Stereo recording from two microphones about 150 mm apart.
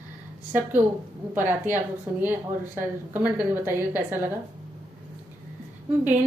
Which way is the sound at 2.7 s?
15° right (ahead or behind).